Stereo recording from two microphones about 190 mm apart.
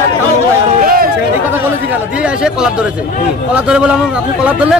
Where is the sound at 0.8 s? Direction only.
50° right (ahead or behind).